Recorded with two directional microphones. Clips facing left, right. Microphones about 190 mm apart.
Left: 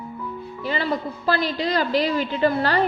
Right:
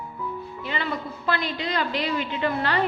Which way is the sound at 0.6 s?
35° left (ahead or behind).